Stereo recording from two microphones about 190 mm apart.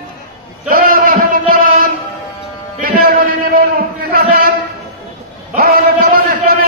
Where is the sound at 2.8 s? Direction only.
45° right (ahead or behind).